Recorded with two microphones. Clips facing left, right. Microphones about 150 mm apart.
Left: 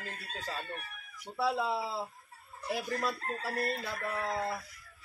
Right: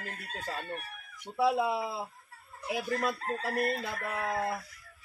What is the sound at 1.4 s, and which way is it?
Chicken, 15° right (ahead or behind).